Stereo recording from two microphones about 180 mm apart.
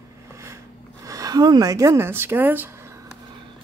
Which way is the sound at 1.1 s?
20° right (ahead or behind).